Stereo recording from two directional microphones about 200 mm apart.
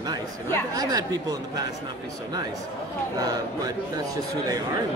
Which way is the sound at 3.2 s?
20° right (ahead or behind).